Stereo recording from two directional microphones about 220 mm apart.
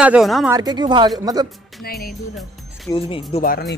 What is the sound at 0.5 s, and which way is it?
Speech, 20° right (ahead or behind).